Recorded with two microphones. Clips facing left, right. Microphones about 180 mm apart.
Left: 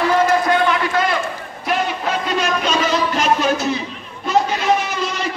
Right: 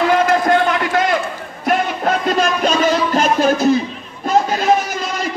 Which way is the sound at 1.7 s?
45° right (ahead or behind).